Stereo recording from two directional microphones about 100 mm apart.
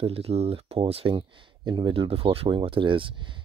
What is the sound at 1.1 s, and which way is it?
Speech, 55° right (ahead or behind).